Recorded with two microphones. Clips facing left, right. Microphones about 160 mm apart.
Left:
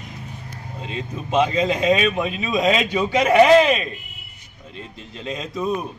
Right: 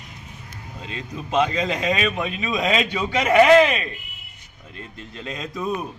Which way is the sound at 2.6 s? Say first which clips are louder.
Left 4 dB; 25° left (ahead or behind).